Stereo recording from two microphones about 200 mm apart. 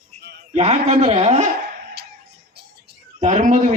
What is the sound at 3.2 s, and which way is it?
Speech, 35° right (ahead or behind).